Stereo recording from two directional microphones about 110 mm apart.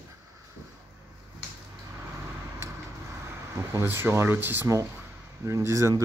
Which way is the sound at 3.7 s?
20° right (ahead or behind).